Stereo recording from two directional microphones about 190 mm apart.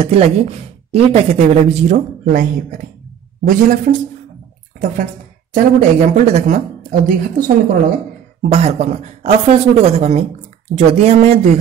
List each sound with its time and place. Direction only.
0.0 s a man's voice: 35° right (ahead or behind); by 7.5 s 50° right (ahead or behind)
8.4 s speech: 35° right (ahead or behind)